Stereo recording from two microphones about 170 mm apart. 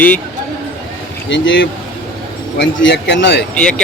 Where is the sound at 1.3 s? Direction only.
90° left.